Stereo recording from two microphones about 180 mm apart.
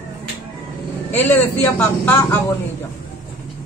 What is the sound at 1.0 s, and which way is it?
A man's voice, 10° left (ahead or behind).